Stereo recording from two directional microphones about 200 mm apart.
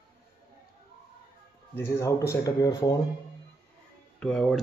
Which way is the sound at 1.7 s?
15° left (ahead or behind).